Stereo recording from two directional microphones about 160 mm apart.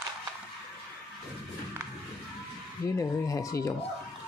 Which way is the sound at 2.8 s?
20° left (ahead or behind).